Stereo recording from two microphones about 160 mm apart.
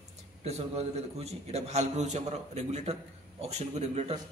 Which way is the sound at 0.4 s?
40° right (ahead or behind).